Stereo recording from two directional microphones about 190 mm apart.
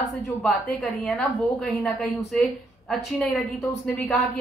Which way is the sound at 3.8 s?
Centre (ahead or behind).